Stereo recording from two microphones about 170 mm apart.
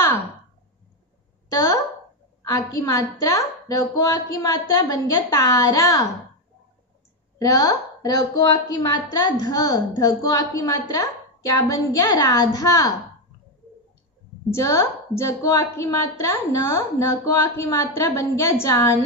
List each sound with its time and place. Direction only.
2.4 s a woman's voice: 20° left (ahead or behind)
7.3 s a woman's voice: 20° left (ahead or behind)
14.5 s a woman's voice: 15° left (ahead or behind)